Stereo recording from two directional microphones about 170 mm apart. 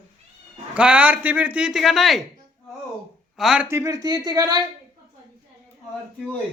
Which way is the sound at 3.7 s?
20° right (ahead or behind).